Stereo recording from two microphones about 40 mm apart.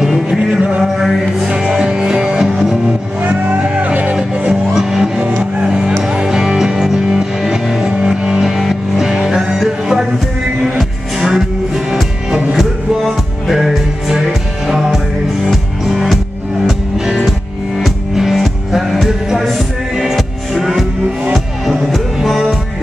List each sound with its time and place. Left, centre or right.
0.0 s music: centre
0.4 s music: right
1.5 s music: centre
3.2 s music: right
4.5 s music: centre
11.1 s music: centre
20.5 s music: centre